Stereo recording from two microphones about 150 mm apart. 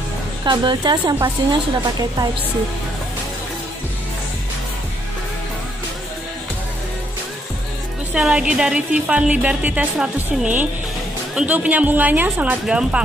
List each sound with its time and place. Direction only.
0.4 s a woman's voice: 30° right (ahead or behind)
8.1 s music: 5° right (ahead or behind)